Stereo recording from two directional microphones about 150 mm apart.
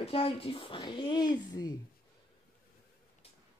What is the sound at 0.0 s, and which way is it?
A woman's voice, 40° left (ahead or behind).